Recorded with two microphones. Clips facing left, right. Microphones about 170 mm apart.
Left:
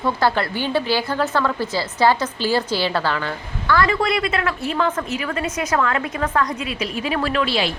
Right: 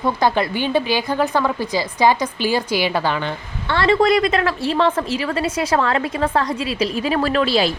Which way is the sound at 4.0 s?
40° right (ahead or behind).